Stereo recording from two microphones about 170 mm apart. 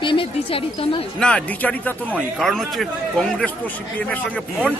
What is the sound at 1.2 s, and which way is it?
A man's voice, 5° left (ahead or behind).